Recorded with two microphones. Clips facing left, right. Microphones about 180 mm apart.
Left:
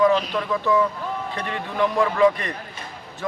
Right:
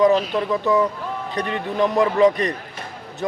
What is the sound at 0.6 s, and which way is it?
Speech, 20° right (ahead or behind).